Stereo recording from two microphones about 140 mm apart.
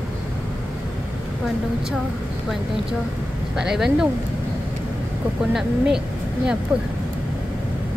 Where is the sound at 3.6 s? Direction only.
5° right (ahead or behind).